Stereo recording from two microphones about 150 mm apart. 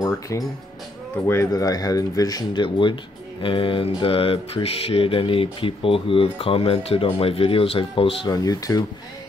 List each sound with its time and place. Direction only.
0.0 s music: 25° left (ahead or behind)
1.2 s speech: 20° left (ahead or behind); by 8.3 s 35° left (ahead or behind)
8.3 s speech: 25° left (ahead or behind)